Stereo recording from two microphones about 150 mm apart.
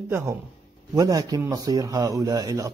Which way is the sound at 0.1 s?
15° right (ahead or behind).